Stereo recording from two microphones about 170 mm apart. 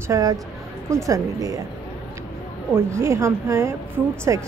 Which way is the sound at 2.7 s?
15° right (ahead or behind).